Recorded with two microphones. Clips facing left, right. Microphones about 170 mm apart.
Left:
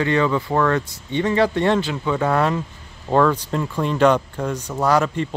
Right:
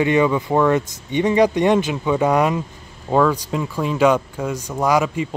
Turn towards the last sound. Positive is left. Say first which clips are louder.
# even
turn(degrees=-10)  # may be behind; listen again after turning